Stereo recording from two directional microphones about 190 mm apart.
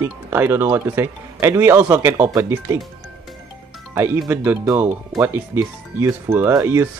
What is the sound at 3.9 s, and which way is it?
Speech, 10° right (ahead or behind).